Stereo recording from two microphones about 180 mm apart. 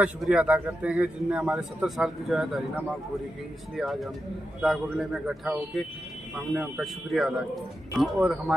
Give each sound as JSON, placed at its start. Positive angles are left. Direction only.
{"t": 0.0, "sound": "a man's voice", "side_deg": -5}